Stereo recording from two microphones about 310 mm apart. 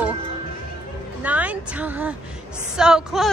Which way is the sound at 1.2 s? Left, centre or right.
Centre.